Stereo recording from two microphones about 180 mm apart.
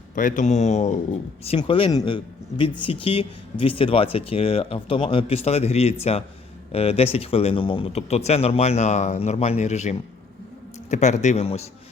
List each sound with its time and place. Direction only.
0.2 s speech: 45° left (ahead or behind)